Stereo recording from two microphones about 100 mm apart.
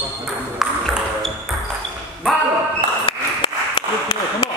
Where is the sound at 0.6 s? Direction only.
Centre (ahead or behind).